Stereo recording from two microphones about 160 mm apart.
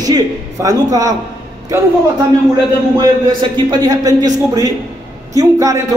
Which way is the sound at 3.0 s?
25° right (ahead or behind).